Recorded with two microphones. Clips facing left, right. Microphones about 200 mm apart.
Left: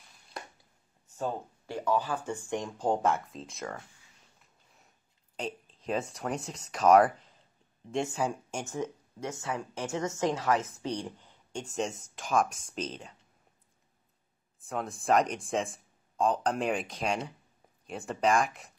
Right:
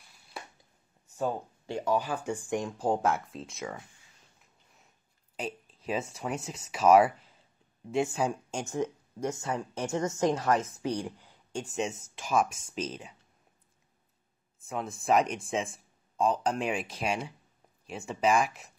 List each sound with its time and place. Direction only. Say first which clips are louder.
1.1 s speech: right 2 dB; 15° right (ahead or behind)
5.3 s a woman's voice: even; 5° right (ahead or behind)
14.6 s speech: even; centre (ahead or behind)